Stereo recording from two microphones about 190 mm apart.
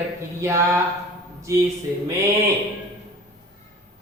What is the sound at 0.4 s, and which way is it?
Speech, 15° right (ahead or behind).